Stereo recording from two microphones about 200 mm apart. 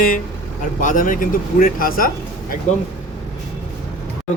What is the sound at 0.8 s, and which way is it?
Speech, 40° left (ahead or behind).